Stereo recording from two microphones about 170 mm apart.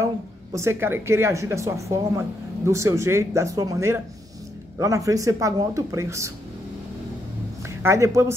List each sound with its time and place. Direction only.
0.0 s a woman's voice: 20° right (ahead or behind)
7.6 s a man's voice: 15° right (ahead or behind)